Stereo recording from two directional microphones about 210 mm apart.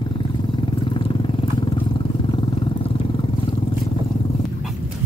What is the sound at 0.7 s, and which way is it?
Vehicle, 25° left (ahead or behind).